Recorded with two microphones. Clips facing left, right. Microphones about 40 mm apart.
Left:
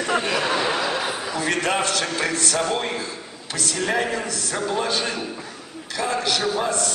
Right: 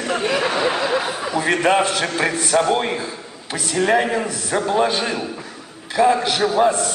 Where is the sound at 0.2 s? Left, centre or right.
Centre.